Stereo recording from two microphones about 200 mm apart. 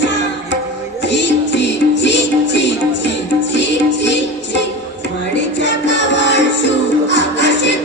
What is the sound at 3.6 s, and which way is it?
Music, 60° left (ahead or behind).